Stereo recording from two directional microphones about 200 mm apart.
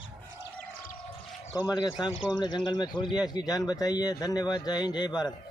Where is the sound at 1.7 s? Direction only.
20° left (ahead or behind).